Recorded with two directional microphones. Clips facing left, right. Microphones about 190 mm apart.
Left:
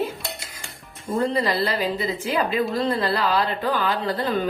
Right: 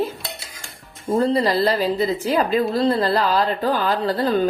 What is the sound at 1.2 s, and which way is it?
Speech, 35° right (ahead or behind).